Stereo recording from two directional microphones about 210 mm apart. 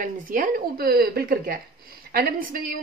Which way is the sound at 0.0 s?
40° right (ahead or behind).